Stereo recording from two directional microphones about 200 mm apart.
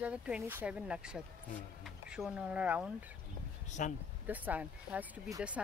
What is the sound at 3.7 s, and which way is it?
Speech, 35° left (ahead or behind).